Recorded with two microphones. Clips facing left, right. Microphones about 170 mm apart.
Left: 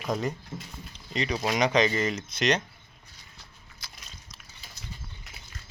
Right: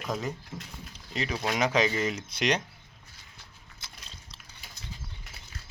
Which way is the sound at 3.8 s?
25° right (ahead or behind).